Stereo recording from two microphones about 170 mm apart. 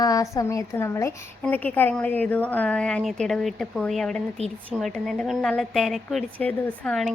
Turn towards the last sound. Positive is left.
turn(degrees=5)  # may be behind; listen again after turning